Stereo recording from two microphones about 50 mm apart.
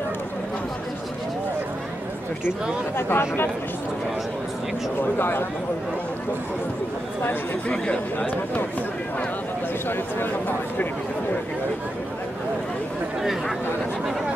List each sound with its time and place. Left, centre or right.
3.0 s speech: left
7.7 s speech: centre
13.2 s speech: centre